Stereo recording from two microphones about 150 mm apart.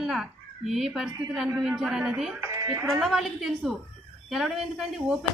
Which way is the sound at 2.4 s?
20° right (ahead or behind).